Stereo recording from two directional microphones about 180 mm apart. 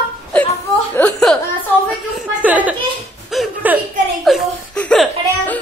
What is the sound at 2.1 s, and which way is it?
Speech, 10° right (ahead or behind).